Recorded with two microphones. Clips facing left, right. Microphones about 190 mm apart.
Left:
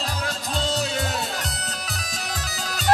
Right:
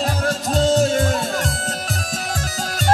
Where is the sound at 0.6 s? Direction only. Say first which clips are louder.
Right 10 dB; 45° right (ahead or behind).